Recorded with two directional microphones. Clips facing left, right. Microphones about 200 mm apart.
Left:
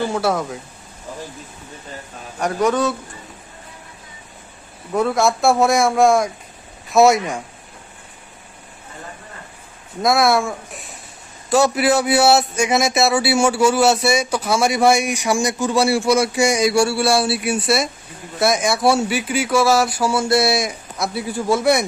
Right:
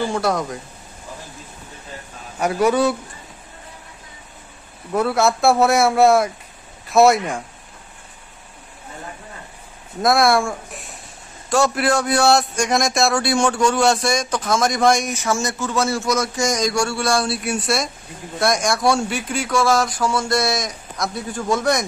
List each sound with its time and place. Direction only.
0.1 s speech: 5° left (ahead or behind)
2.4 s a man's voice: 10° right (ahead or behind)
4.9 s speech: centre (ahead or behind)
10.0 s a man's voice: centre (ahead or behind)